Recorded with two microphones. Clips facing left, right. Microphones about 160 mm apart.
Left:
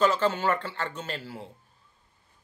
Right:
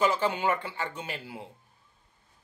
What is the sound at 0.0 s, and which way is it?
Speech, 10° right (ahead or behind).